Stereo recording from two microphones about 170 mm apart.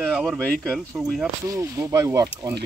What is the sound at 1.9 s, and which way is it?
Speech, 20° right (ahead or behind).